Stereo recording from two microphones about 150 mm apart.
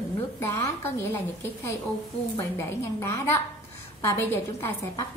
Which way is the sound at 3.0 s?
20° left (ahead or behind).